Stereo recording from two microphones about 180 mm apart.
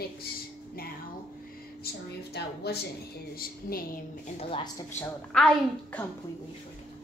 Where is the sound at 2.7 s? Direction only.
65° left (ahead or behind).